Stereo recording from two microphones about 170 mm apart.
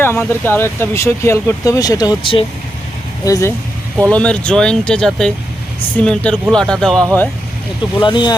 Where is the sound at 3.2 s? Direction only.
20° left (ahead or behind).